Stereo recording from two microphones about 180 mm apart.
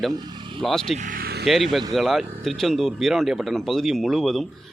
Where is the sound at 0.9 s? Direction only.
50° right (ahead or behind).